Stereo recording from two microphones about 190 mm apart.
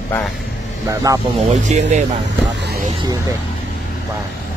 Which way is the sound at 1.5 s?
40° right (ahead or behind).